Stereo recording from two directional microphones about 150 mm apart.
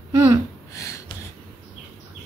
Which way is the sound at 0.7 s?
20° left (ahead or behind).